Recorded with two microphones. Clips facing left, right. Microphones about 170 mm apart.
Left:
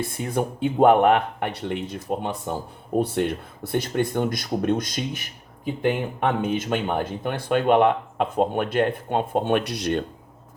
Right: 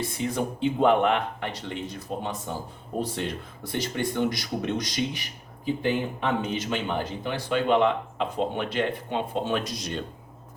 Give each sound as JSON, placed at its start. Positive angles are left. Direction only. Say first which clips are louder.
{"t": 0.2, "sound": "speech", "louder": "left 2 dB", "side_deg": 55}